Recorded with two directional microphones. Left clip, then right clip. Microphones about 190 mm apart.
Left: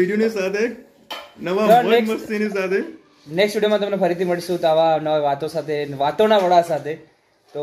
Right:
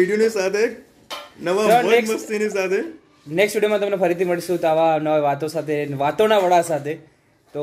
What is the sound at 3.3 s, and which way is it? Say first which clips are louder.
A man's voice: even; 20° right (ahead or behind).